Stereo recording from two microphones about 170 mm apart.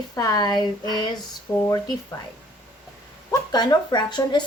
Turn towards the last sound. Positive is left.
turn(degrees=25)  # may be behind; listen again after turning